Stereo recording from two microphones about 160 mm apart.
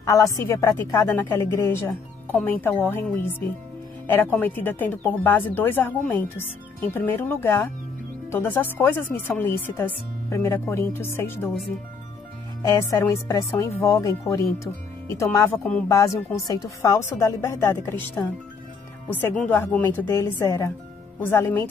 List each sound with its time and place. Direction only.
0.0 s speech: 20° left (ahead or behind)
12.6 s speech: 20° left (ahead or behind)
19.2 s speech: 10° left (ahead or behind)